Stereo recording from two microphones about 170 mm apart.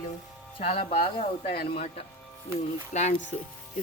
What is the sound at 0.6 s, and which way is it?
Speech, 35° left (ahead or behind).